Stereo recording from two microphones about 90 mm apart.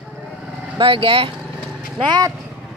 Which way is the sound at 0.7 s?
85° right.